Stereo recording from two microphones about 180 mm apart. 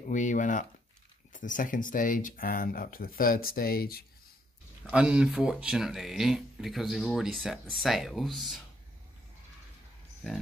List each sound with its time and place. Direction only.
0.1 s speech: 45° left (ahead or behind)
4.9 s speech: 5° right (ahead or behind)